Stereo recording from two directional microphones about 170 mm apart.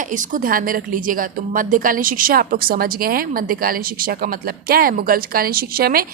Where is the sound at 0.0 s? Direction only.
50° right (ahead or behind).